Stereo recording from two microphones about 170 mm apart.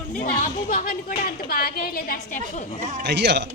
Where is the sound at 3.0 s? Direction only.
85° right.